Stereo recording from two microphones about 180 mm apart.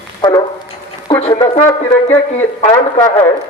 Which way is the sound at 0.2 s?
20° left (ahead or behind).